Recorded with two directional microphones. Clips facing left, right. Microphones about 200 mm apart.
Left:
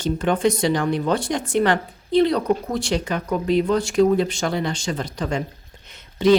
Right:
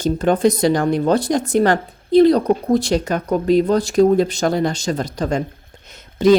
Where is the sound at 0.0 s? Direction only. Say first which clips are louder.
Right 4 dB; 40° right (ahead or behind).